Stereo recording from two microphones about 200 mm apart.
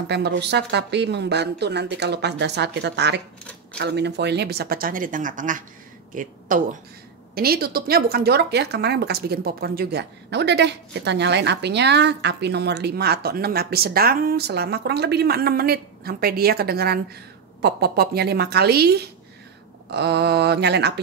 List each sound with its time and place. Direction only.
0.1 s a woman's voice: 55° right (ahead or behind)